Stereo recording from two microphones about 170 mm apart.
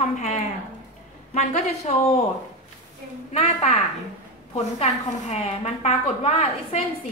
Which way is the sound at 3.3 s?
40° left (ahead or behind).